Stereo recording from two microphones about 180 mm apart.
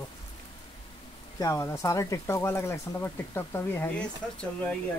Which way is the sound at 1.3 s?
15° left (ahead or behind).